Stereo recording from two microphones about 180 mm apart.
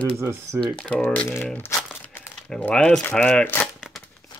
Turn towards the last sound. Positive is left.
turn(degrees=-5)  # may be behind; listen again after turning